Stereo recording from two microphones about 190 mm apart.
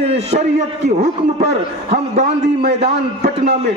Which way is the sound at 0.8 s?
35° right (ahead or behind).